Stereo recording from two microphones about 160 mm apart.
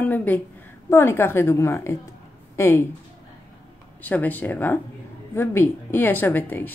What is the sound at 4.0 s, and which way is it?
Speech, 10° left (ahead or behind).